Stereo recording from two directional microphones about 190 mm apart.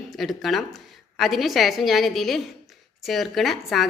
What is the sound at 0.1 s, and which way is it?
A woman's voice, centre (ahead or behind).